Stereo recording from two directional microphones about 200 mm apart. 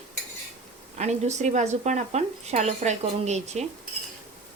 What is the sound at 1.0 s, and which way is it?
Speech, 35° right (ahead or behind).